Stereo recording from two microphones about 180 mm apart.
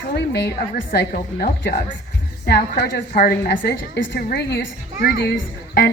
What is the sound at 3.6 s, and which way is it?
A woman's voice, 65° left (ahead or behind).